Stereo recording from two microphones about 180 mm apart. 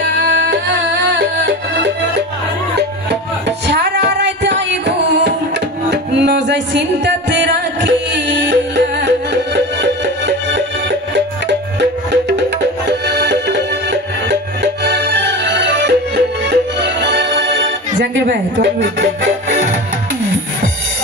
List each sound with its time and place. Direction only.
0.2 s music: 70° right (ahead or behind)
18.1 s speech: 75° right (ahead or behind)